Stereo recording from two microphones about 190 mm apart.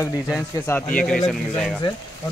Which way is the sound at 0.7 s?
10° left (ahead or behind).